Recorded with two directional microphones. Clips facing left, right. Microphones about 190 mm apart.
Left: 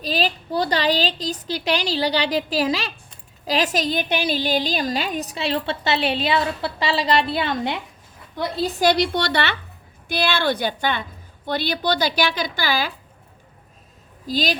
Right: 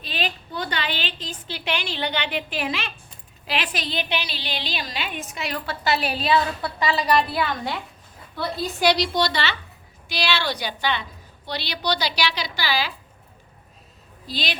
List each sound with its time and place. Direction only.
0.0 s a woman's voice: 35° left (ahead or behind)
8.8 s a woman's voice: 55° left (ahead or behind)
14.3 s a woman's voice: 45° left (ahead or behind)